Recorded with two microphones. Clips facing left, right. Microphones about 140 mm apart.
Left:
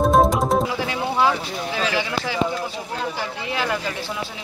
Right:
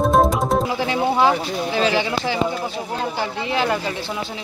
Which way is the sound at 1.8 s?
30° right (ahead or behind).